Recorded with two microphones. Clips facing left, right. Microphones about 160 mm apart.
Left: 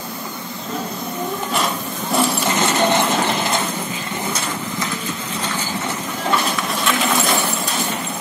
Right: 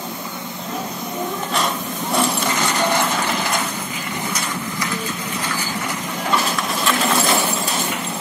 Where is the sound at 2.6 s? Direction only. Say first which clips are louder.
Left 3 dB; 20° left (ahead or behind).